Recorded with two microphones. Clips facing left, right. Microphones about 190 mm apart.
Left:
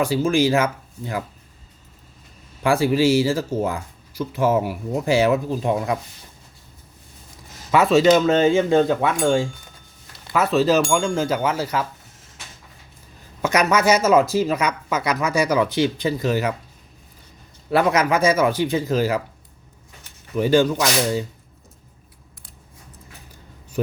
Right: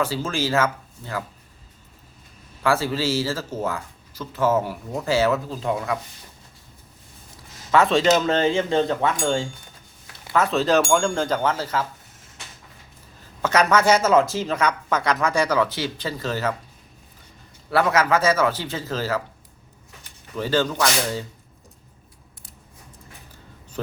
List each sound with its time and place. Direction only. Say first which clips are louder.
0.0 s speech: left 6 dB; 15° left (ahead or behind)
2.6 s speech: left 5 dB; 15° left (ahead or behind)
7.7 s speech: left 3 dB; 10° left (ahead or behind)
13.4 s speech: even; 10° left (ahead or behind)
17.7 s speech: left 1 dB; 20° left (ahead or behind)
20.3 s speech: left 6 dB; 15° left (ahead or behind)
23.8 s a man's voice: left 7 dB; 15° left (ahead or behind)